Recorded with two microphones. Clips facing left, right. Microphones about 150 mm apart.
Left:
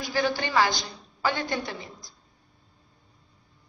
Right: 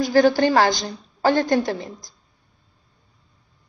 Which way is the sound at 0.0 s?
45° right (ahead or behind).